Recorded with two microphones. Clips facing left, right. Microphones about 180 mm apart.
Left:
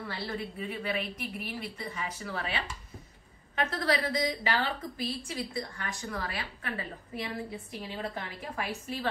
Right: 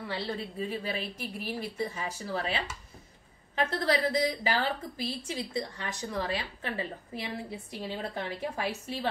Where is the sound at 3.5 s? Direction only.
30° right (ahead or behind).